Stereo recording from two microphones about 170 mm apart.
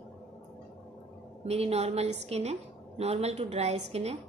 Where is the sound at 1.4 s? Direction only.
35° right (ahead or behind).